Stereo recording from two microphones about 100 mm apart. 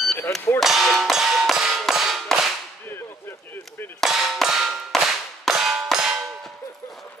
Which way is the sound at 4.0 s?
Centre (ahead or behind).